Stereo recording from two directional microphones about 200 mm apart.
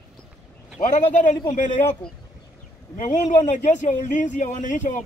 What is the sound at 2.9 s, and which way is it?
Speech, 40° left (ahead or behind).